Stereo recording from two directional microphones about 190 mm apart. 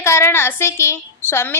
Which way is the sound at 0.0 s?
15° left (ahead or behind).